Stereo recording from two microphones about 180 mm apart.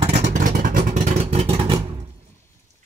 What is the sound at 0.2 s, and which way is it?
Vehicle, 45° right (ahead or behind).